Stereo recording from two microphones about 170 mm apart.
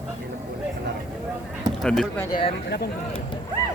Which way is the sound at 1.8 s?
5° left (ahead or behind).